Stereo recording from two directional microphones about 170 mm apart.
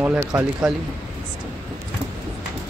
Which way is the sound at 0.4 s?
5° right (ahead or behind).